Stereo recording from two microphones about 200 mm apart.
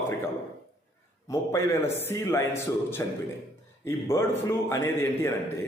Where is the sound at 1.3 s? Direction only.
15° left (ahead or behind).